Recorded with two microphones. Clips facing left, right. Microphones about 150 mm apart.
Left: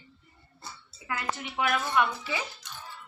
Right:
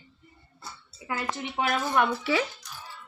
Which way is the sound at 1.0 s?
30° right (ahead or behind).